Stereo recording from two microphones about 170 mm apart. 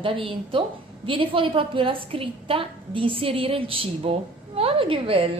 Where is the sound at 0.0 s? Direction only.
30° right (ahead or behind).